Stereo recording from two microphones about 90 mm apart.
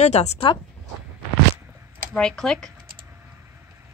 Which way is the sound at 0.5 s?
65° left (ahead or behind).